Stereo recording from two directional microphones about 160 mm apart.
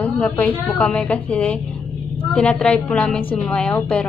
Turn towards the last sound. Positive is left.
turn(degrees=5)  # may be behind; listen again after turning